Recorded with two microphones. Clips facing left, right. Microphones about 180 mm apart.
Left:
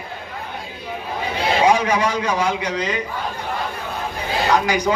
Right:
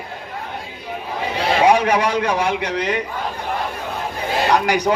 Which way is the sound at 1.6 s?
60° right (ahead or behind).